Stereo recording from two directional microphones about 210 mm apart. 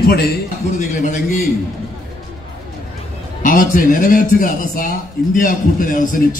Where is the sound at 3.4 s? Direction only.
40° left (ahead or behind).